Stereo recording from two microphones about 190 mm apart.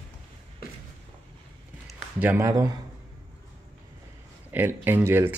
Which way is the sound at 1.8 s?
10° right (ahead or behind).